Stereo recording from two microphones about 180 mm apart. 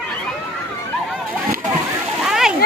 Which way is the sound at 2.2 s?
5° right (ahead or behind).